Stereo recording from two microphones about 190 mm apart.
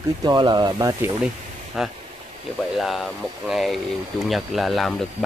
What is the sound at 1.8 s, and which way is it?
Speech, centre (ahead or behind).